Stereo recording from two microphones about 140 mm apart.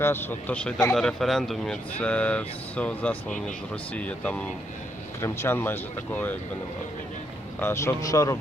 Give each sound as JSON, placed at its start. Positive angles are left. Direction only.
{"t": 0.0, "sound": "speech", "side_deg": 15}
{"t": 7.6, "sound": "speech", "side_deg": 20}